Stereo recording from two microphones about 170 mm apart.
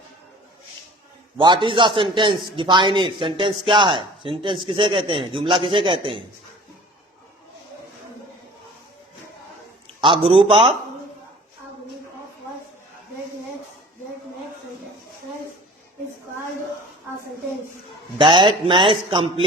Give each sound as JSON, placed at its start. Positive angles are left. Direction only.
{"t": 1.4, "sound": "speech", "side_deg": -25}
{"t": 10.0, "sound": "a man's voice", "side_deg": -30}
{"t": 18.2, "sound": "a man's voice", "side_deg": -30}